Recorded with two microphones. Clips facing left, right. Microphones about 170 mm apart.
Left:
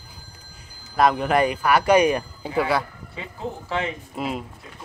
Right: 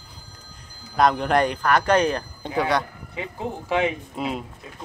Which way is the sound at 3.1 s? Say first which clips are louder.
Right 2 dB; 15° right (ahead or behind).